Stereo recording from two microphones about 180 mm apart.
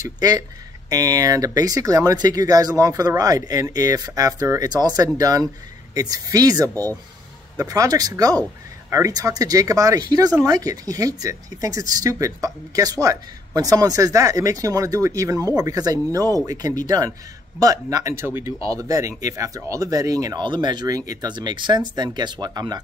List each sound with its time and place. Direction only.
0.0 s speech: 20° right (ahead or behind)